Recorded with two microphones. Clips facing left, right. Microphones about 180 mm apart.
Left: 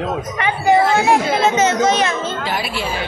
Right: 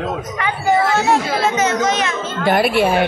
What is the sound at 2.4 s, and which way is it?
Speech, 55° right (ahead or behind).